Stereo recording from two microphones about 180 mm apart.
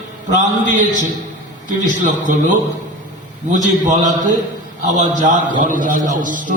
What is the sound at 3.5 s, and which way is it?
A man's voice, 45° right (ahead or behind).